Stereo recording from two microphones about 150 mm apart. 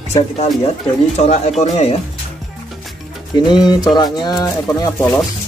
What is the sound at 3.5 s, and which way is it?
Speech, 30° left (ahead or behind).